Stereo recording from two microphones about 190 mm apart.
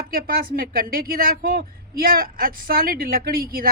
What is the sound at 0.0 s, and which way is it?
Speech, 50° right (ahead or behind).